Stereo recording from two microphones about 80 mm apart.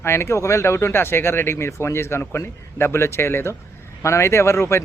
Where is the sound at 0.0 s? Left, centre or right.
Left.